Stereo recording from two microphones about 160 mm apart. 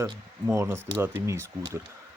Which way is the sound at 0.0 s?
15° right (ahead or behind).